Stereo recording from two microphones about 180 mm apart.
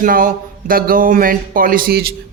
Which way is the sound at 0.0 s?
50° right (ahead or behind).